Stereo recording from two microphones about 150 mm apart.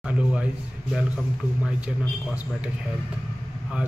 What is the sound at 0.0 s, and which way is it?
A man's voice, 10° right (ahead or behind).